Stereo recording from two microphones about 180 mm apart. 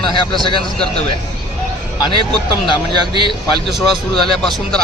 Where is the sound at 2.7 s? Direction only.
30° left (ahead or behind).